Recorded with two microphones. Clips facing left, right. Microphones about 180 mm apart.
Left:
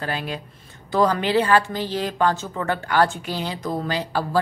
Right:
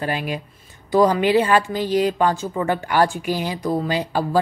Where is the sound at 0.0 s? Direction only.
15° right (ahead or behind).